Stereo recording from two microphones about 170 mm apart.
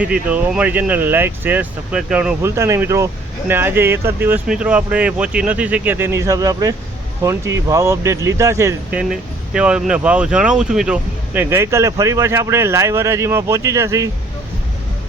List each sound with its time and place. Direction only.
0.0 s speech: 10° right (ahead or behind)